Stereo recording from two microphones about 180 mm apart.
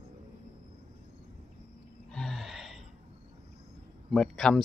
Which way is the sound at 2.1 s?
5° left (ahead or behind).